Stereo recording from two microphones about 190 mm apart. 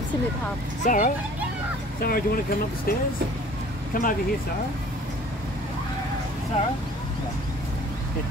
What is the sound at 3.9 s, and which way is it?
Speech, 45° left (ahead or behind).